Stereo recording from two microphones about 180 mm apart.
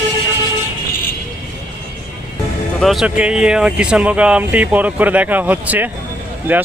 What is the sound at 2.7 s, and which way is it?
Speech, centre (ahead or behind).